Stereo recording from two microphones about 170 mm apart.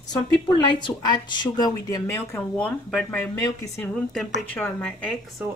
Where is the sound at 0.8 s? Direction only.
25° left (ahead or behind); by 5.4 s 5° left (ahead or behind).